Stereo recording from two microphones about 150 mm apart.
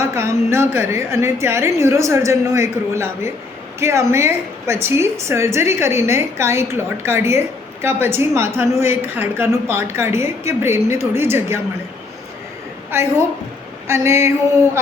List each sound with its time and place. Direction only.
0.0 s a woman's voice: 20° right (ahead or behind)
12.9 s a woman's voice: 15° right (ahead or behind)